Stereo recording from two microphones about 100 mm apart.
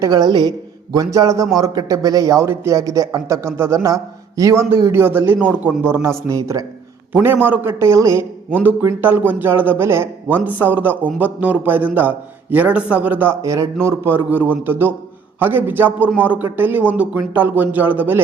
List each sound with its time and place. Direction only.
0.0 s a woman's voice: 45° right (ahead or behind)
0.9 s a man's voice: 35° right (ahead or behind)
7.1 s a man's voice: 20° right (ahead or behind)
8.4 s a man's voice: 20° right (ahead or behind)
13.4 s a man's voice: 35° right (ahead or behind); by 18.2 s 20° right (ahead or behind)